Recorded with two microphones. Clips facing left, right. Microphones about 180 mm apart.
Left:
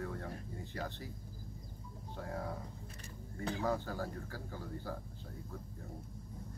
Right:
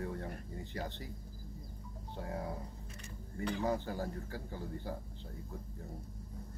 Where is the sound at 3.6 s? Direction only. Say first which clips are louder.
Even; 20° right (ahead or behind).